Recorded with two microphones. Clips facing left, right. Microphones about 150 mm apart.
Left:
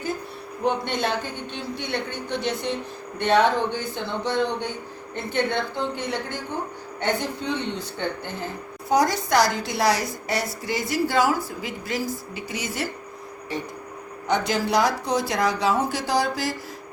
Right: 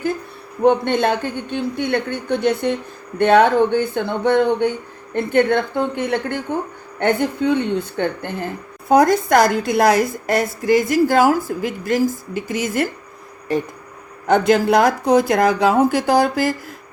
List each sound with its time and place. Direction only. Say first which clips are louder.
0.6 s a woman's voice: right 9 dB; 55° right (ahead or behind)
14.3 s a woman's voice: right 9 dB; 55° right (ahead or behind)